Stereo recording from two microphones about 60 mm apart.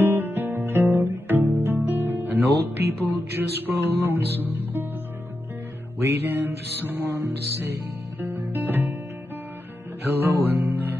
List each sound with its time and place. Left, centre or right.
0.0 s guitar: right
5.9 s music: right
10.1 s music: right